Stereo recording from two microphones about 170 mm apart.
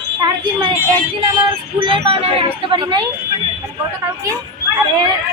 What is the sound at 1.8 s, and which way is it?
Speech, 30° right (ahead or behind).